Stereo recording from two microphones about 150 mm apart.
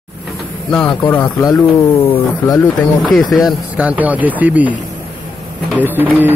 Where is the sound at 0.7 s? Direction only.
5° left (ahead or behind).